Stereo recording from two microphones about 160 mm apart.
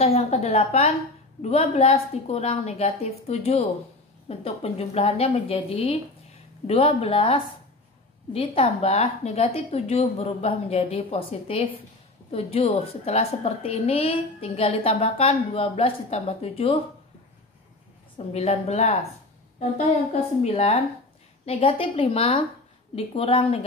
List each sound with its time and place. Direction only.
0.0 s a woman's voice: 40° left (ahead or behind)
18.1 s a woman's voice: 40° left (ahead or behind)
20.1 s a woman's voice: 40° left (ahead or behind)